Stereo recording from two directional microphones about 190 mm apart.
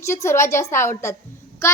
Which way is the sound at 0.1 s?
15° left (ahead or behind).